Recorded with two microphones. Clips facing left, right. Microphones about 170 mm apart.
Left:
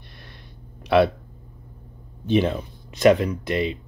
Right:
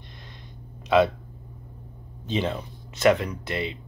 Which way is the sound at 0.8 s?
20° right (ahead or behind).